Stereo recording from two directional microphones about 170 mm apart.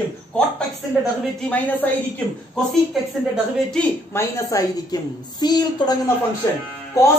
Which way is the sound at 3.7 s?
15° left (ahead or behind).